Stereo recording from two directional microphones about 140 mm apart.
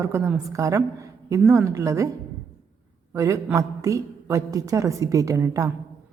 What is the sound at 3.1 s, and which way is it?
A woman's voice, 25° right (ahead or behind).